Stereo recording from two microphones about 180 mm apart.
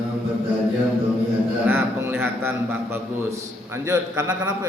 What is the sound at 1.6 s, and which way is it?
A man's voice, 10° right (ahead or behind).